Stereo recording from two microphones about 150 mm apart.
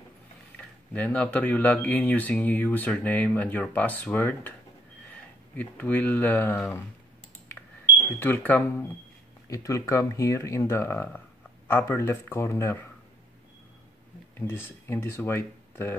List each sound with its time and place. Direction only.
0.6 s speech: 10° left (ahead or behind)
5.6 s speech: 10° left (ahead or behind)
8.2 s speech: 10° left (ahead or behind)
14.4 s speech: 15° left (ahead or behind)